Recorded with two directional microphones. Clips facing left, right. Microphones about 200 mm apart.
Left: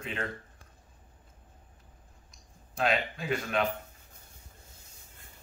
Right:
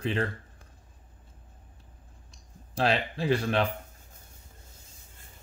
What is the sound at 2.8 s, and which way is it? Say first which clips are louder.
Speech: right 2 dB; 30° right (ahead or behind).